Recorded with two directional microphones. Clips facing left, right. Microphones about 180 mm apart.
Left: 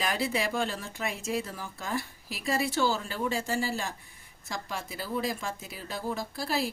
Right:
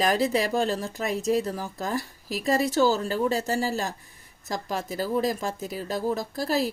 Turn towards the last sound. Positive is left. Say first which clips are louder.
# right 5 dB
turn(degrees=-40)  # may be behind; listen again after turning